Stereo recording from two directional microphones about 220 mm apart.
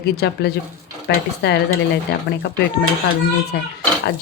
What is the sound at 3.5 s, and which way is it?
Speech, 50° left (ahead or behind).